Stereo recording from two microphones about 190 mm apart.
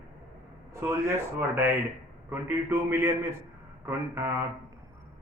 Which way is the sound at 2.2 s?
10° right (ahead or behind).